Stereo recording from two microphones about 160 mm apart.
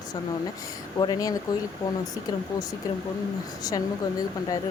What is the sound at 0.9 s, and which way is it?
Speech, 25° left (ahead or behind).